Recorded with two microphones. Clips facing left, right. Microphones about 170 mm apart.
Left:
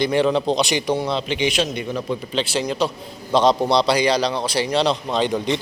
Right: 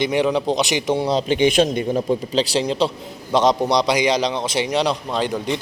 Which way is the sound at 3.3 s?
15° right (ahead or behind).